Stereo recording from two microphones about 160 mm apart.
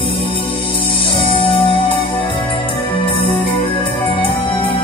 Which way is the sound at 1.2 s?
35° left (ahead or behind).